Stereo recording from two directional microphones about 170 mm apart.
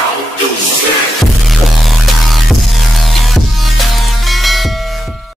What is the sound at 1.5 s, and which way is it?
Music, centre (ahead or behind).